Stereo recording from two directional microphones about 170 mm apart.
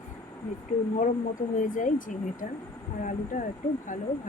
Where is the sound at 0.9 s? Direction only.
50° left (ahead or behind).